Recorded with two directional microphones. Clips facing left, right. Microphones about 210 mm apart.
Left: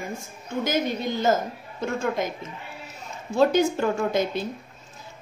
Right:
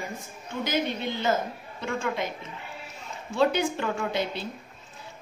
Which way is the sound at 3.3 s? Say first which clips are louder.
Left 4 dB; 40° left (ahead or behind).